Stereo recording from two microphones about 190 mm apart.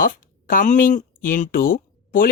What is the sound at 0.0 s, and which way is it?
Speech, 50° left (ahead or behind).